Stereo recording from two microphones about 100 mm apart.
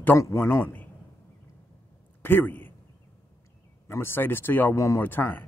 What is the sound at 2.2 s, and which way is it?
Speech, 20° left (ahead or behind).